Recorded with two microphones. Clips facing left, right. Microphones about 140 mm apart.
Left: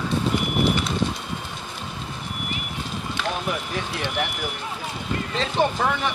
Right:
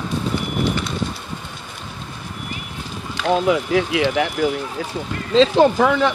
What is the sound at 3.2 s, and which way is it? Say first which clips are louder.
Speech: right 12 dB; 90° right.